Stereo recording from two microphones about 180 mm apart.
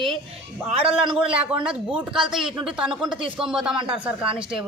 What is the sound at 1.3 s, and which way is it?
Speech, 5° right (ahead or behind).